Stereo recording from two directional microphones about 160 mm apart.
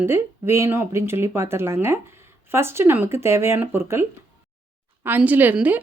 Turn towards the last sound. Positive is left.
turn(degrees=-10)  # may be behind; listen again after turning